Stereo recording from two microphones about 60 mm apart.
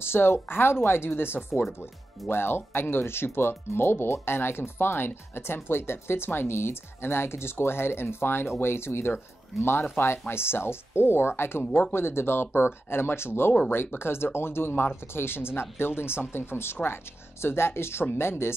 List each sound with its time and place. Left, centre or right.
0.0 s speech: left
11.6 s speech: left
11.9 s speech: left